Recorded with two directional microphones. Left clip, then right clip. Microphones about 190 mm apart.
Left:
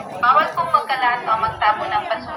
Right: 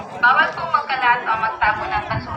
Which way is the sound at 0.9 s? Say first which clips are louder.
Right 1 dB; 15° left (ahead or behind).